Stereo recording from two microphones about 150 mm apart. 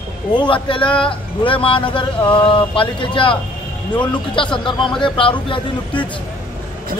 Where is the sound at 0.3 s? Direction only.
30° left (ahead or behind).